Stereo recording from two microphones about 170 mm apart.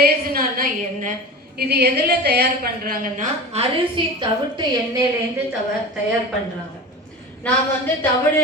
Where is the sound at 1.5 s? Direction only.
70° right (ahead or behind); by 5.0 s 25° right (ahead or behind).